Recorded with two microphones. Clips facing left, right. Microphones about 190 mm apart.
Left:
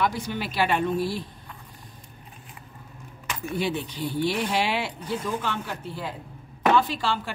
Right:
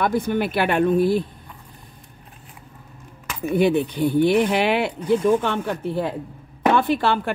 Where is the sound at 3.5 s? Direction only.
55° right (ahead or behind).